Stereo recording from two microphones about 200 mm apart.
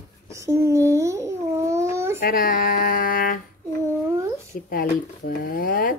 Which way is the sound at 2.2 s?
45° left (ahead or behind).